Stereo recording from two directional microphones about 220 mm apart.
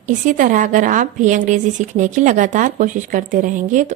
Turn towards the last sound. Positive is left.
turn(degrees=-35)  # may be behind; listen again after turning